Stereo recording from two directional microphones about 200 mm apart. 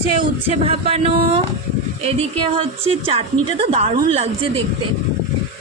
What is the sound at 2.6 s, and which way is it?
Female singing, 25° right (ahead or behind).